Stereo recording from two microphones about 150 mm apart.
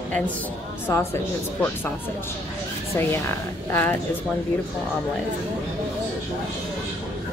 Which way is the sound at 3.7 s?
15° left (ahead or behind).